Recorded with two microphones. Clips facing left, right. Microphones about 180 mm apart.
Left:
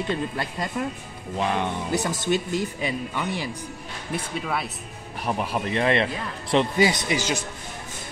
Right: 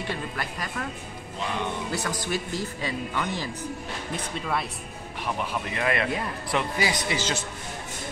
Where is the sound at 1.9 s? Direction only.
20° left (ahead or behind); by 4.6 s 5° left (ahead or behind).